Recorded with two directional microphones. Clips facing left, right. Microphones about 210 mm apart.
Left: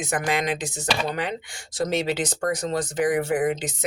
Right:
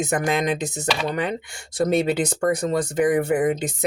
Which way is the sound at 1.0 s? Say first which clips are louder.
Right 3 dB; 50° right (ahead or behind).